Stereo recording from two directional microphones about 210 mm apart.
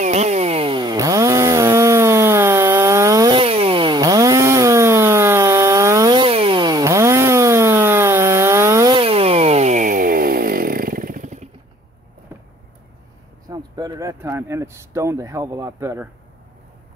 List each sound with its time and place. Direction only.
0.0 s chainsaw: 35° right (ahead or behind)
13.5 s speech: 20° right (ahead or behind)